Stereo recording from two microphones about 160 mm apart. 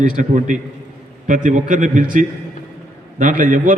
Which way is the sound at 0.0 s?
50° right (ahead or behind).